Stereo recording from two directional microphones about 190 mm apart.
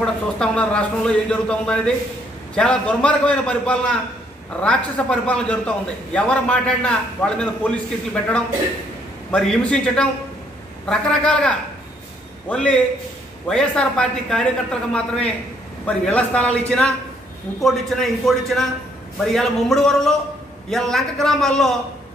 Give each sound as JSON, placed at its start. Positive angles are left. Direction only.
{"t": 0.0, "sound": "a man's voice", "side_deg": 5}